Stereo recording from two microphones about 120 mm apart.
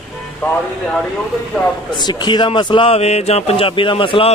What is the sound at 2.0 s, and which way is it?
A man's voice, 35° left (ahead or behind).